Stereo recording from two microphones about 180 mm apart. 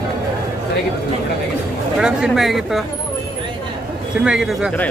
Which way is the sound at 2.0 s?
5° right (ahead or behind).